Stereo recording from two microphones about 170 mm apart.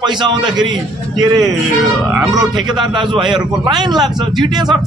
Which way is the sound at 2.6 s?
25° right (ahead or behind).